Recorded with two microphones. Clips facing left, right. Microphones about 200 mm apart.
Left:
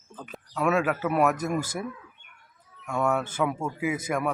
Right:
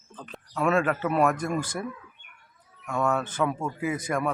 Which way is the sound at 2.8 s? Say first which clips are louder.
Even; 10° left (ahead or behind).